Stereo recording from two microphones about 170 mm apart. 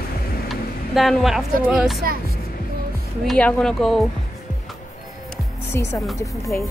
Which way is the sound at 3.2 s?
5° left (ahead or behind).